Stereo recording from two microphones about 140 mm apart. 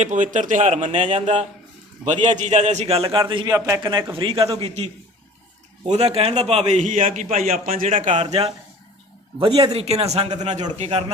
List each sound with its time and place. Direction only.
0.0 s a man's voice: 60° right (ahead or behind)
5.9 s a man's voice: 50° right (ahead or behind)
8.2 s a man's voice: 45° right (ahead or behind)